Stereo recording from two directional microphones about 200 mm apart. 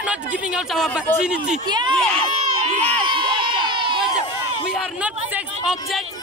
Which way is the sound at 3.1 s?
25° right (ahead or behind).